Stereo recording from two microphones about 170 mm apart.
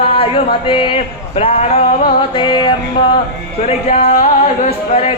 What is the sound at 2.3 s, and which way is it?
Music, 25° left (ahead or behind).